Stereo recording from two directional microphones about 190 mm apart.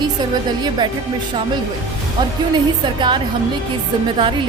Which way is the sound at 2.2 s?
25° right (ahead or behind).